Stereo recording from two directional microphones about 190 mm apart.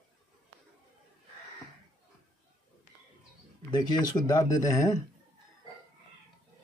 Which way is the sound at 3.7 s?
20° left (ahead or behind).